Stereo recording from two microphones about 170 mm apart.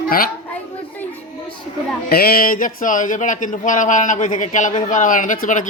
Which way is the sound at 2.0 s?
65° left (ahead or behind).